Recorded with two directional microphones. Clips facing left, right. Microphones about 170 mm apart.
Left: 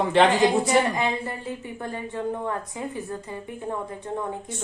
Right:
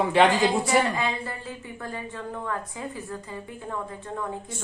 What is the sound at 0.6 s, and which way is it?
A woman's voice, 20° left (ahead or behind).